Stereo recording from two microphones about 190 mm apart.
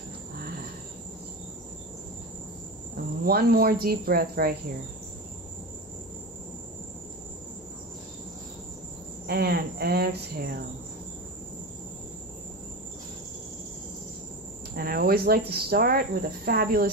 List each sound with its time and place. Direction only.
3.3 s speech: 50° right (ahead or behind)
9.3 s speech: 55° right (ahead or behind)
14.8 s speech: 50° right (ahead or behind)